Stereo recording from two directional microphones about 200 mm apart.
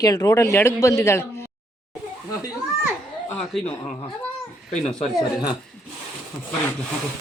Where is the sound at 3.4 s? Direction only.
5° left (ahead or behind).